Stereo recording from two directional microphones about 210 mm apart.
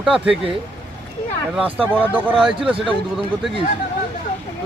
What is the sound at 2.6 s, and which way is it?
Speech, 25° right (ahead or behind).